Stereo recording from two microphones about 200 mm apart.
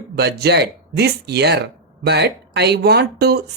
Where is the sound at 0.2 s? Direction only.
55° right (ahead or behind).